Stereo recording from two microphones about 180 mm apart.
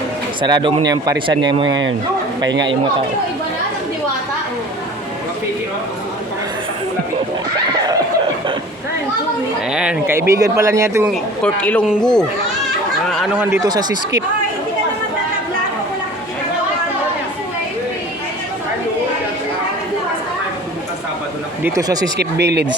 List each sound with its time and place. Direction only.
0.4 s speech: 25° right (ahead or behind)
2.5 s speech: 80° right
7.7 s snicker: 20° right (ahead or behind)
9.7 s speech: 5° right (ahead or behind)
10.2 s a man's voice: 15° right (ahead or behind)
11.1 s a man's voice: 5° left (ahead or behind)
13.1 s a sound: centre (ahead or behind)
13.4 s speech: 15° right (ahead or behind)
21.6 s speech: 20° right (ahead or behind)
22.2 s speech: 70° right (ahead or behind)